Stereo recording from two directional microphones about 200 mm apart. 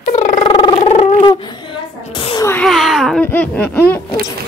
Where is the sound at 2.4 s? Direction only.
5° left (ahead or behind).